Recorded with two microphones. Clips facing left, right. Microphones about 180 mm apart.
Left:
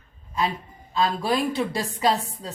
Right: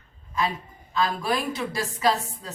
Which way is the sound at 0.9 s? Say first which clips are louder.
Left 2 dB; 30° left (ahead or behind).